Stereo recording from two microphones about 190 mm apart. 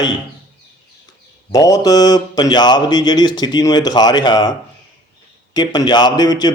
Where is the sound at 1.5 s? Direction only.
20° left (ahead or behind).